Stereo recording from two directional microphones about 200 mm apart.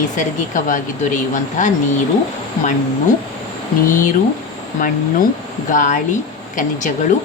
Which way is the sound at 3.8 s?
40° left (ahead or behind).